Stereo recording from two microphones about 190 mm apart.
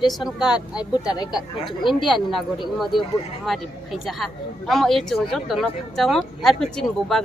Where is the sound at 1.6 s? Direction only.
25° left (ahead or behind).